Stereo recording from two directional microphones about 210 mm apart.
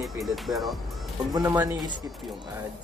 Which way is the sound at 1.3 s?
15° right (ahead or behind).